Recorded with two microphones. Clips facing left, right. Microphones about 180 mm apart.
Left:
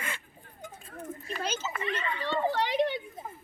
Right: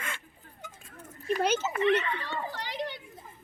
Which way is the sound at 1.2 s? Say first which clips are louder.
Right 9 dB; 65° right (ahead or behind).